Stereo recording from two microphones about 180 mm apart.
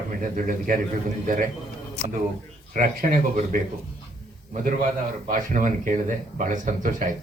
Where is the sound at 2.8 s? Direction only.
50° right (ahead or behind).